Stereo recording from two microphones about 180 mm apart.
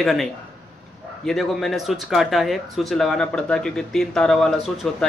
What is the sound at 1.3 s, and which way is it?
Speech, centre (ahead or behind).